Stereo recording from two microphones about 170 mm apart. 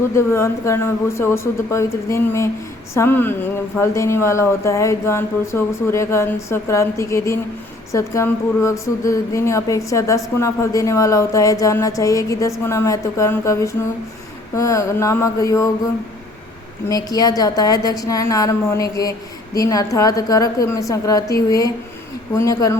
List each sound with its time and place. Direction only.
0.2 s speech: 15° left (ahead or behind)
16.9 s speech: 20° left (ahead or behind)
22.4 s speech: 20° left (ahead or behind)